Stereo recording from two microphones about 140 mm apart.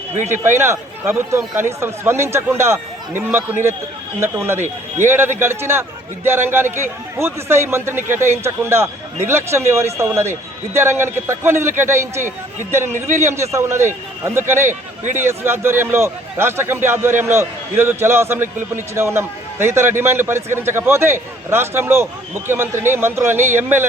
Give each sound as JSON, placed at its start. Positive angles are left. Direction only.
{"t": 0.3, "sound": "a man's voice", "side_deg": -15}
{"t": 13.2, "sound": "a man's voice", "side_deg": -20}